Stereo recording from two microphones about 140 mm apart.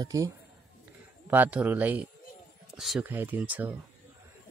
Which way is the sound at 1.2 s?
10° right (ahead or behind).